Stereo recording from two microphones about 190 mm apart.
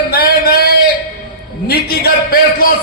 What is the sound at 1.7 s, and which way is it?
A man's voice, 50° left (ahead or behind).